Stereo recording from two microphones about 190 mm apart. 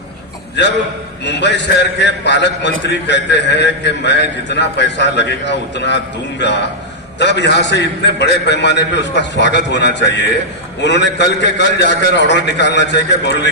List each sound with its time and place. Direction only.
1.2 s a man's voice: 65° left (ahead or behind)